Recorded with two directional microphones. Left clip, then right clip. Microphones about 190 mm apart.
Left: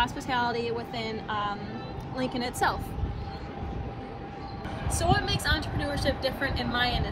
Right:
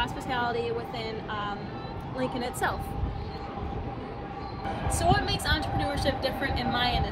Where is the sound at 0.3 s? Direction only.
30° left (ahead or behind).